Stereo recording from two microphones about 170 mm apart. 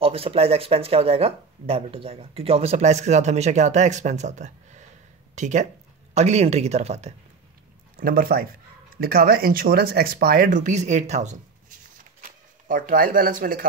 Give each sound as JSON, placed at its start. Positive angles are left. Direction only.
{"t": 0.0, "sound": "speech", "side_deg": -35}
{"t": 7.9, "sound": "speech", "side_deg": -55}